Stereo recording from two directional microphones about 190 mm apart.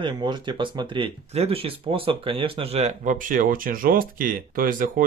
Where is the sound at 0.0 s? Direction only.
25° right (ahead or behind).